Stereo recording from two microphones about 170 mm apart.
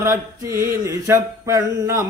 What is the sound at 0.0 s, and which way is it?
Mantra, 15° right (ahead or behind).